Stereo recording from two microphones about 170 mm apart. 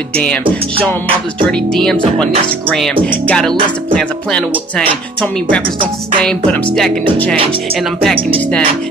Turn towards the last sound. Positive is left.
turn(degrees=5)  # may be behind; listen again after turning